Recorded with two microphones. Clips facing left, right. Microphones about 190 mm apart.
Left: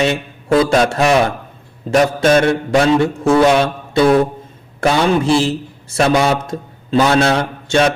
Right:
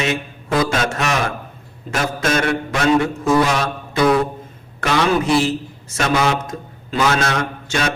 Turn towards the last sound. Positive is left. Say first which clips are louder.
# left 7 dB
turn(degrees=30)  # may be behind; listen again after turning